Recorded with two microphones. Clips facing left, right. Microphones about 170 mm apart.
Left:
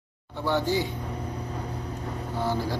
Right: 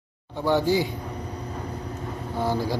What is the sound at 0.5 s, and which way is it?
Speech, 15° right (ahead or behind).